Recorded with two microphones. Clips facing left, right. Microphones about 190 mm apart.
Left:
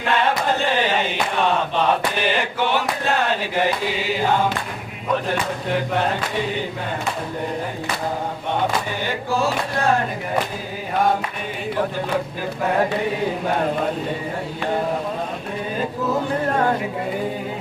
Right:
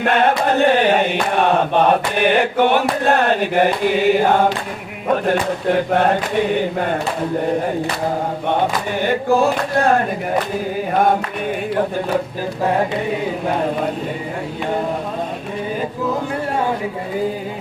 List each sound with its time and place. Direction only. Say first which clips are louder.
0.0 s chant: right 5 dB; 55° right (ahead or behind)
5.0 s speech: right 5 dB; 50° right (ahead or behind)
9.0 s chant: right 9 dB; 55° right (ahead or behind)